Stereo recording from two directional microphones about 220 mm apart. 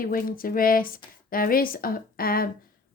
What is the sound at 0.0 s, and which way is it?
Speech, 40° left (ahead or behind).